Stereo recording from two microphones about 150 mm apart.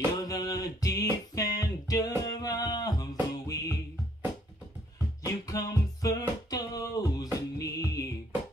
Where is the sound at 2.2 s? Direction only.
25° left (ahead or behind).